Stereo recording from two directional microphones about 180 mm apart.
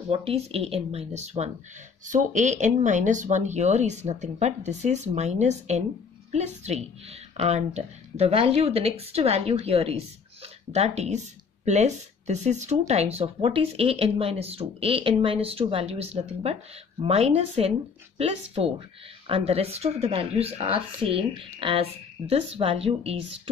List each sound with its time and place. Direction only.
0.1 s speech: 30° right (ahead or behind)